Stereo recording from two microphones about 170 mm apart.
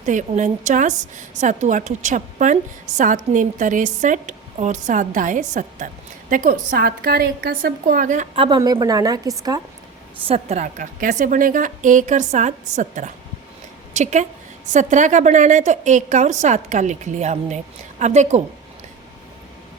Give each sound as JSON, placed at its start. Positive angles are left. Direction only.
{"t": 0.0, "sound": "a woman's voice", "side_deg": -45}
{"t": 8.4, "sound": "a woman's voice", "side_deg": -25}
{"t": 10.2, "sound": "a woman's voice", "side_deg": -40}